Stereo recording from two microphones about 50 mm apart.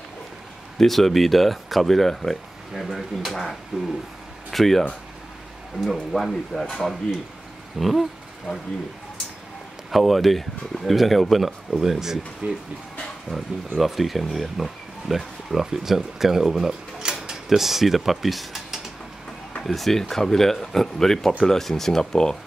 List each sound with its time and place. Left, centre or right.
0.7 s speech: centre
5.9 s speech: centre
8.5 s speech: left
9.8 s speech: centre
13.7 s speech: centre